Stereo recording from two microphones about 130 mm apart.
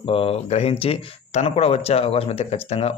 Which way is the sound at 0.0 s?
45° left (ahead or behind).